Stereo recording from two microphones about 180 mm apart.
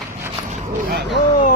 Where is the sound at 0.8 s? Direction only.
65° right (ahead or behind).